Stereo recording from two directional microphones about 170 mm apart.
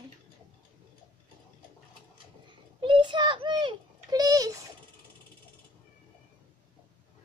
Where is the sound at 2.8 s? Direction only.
30° right (ahead or behind).